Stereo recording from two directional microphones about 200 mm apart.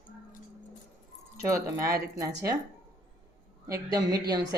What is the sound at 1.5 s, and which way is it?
Speech, 15° right (ahead or behind).